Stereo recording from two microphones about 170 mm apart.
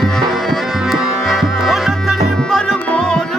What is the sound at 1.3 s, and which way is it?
Music, centre (ahead or behind).